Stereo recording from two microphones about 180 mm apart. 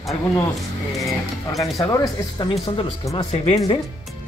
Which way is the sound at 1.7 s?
20° left (ahead or behind).